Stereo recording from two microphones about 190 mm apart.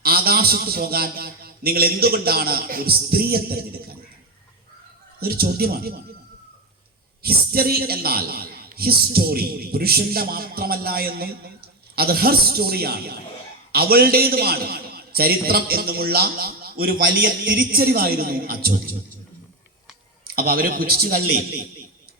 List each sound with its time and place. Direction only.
0.0 s a man's voice: 55° right (ahead or behind)
5.2 s a man's voice: 55° right (ahead or behind)
7.2 s a man's voice: 55° right (ahead or behind)
20.2 s a man's voice: 50° right (ahead or behind)